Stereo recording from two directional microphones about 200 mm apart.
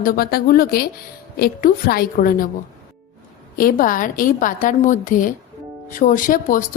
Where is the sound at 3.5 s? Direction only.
45° left (ahead or behind).